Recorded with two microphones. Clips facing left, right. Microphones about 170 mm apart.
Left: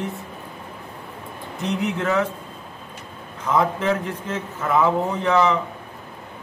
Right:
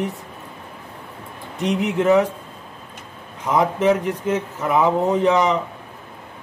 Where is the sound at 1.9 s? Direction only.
20° right (ahead or behind).